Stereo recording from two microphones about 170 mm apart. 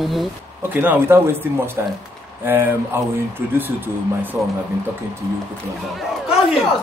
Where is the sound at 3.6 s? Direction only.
10° right (ahead or behind).